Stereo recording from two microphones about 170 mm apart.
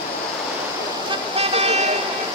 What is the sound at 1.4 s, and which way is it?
Vehicle, 35° right (ahead or behind).